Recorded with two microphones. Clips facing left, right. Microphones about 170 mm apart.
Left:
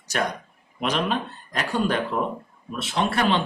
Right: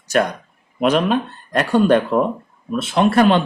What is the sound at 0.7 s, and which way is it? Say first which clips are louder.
Speech: right 8 dB; 55° right (ahead or behind).